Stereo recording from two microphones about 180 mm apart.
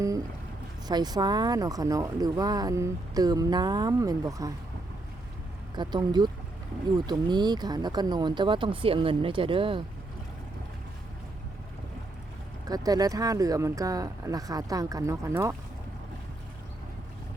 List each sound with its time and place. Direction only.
0.9 s speech: 20° right (ahead or behind)
5.7 s speech: 25° right (ahead or behind)
12.6 s speech: 20° right (ahead or behind)